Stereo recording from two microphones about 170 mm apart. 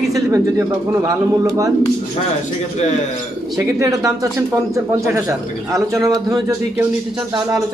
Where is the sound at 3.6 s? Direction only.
20° right (ahead or behind).